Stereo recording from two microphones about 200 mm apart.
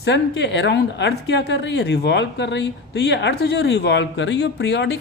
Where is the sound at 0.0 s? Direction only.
60° left (ahead or behind).